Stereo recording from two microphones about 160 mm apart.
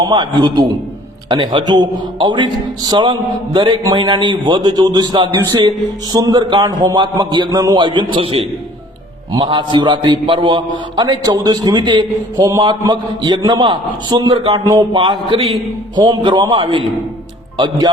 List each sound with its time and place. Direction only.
0.0 s a man's voice: 30° right (ahead or behind)